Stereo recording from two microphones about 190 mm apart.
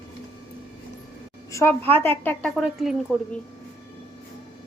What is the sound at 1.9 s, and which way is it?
A woman's voice, 10° left (ahead or behind).